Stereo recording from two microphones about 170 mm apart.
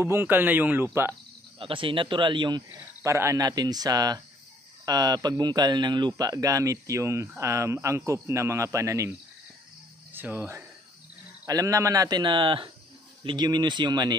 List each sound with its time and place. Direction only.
0.0 s speech: 15° right (ahead or behind)
1.6 s speech: 30° right (ahead or behind)
10.1 s speech: 10° right (ahead or behind)